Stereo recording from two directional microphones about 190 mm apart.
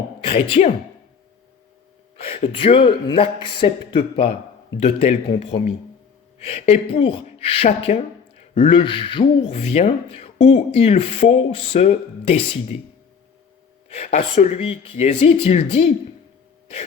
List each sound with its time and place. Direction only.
0.3 s speech: 30° left (ahead or behind)
2.2 s speech: 30° left (ahead or behind)
13.9 s speech: 35° left (ahead or behind)